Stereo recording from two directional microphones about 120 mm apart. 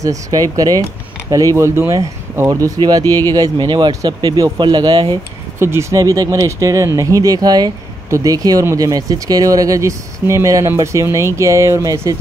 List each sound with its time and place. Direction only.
0.0 s speech: 30° right (ahead or behind)
5.6 s speech: 20° right (ahead or behind)